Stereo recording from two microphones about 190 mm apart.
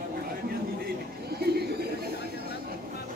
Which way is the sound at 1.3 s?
55° right (ahead or behind).